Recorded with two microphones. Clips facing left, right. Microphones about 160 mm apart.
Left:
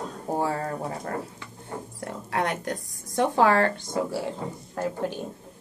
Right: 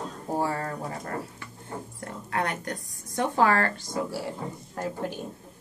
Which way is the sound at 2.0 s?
20° left (ahead or behind).